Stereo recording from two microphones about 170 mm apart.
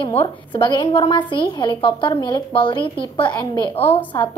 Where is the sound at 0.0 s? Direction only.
30° left (ahead or behind).